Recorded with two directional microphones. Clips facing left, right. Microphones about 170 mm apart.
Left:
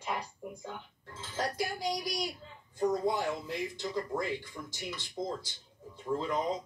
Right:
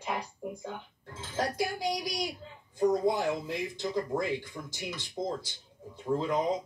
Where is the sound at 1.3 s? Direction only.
15° right (ahead or behind).